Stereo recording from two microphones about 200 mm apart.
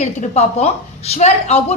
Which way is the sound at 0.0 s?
35° left (ahead or behind).